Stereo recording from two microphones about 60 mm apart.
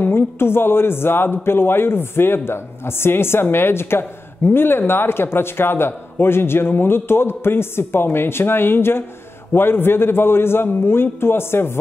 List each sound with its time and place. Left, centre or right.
0.0 s a man's voice: left